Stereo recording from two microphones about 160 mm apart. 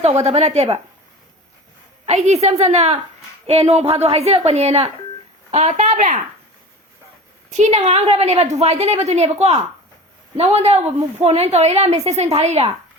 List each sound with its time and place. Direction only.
0.0 s a woman's voice: 40° right (ahead or behind)
2.0 s a woman's voice: 45° right (ahead or behind)
7.5 s a woman's voice: 45° right (ahead or behind)